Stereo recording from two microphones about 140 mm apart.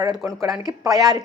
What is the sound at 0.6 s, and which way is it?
Speech, 25° right (ahead or behind).